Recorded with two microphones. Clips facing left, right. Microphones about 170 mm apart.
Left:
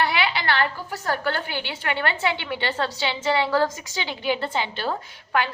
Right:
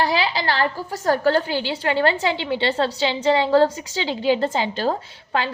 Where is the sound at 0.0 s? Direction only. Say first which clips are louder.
Right 3 dB; 35° right (ahead or behind).